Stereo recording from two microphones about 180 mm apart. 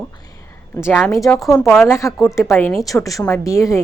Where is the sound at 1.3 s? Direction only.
10° left (ahead or behind).